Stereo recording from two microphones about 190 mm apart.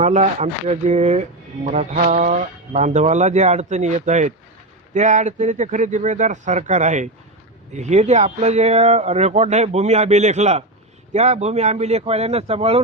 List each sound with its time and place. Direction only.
0.0 s speech: 40° right (ahead or behind)